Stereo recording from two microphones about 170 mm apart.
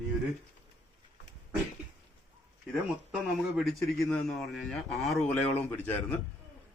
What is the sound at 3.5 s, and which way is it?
A man's voice, centre (ahead or behind).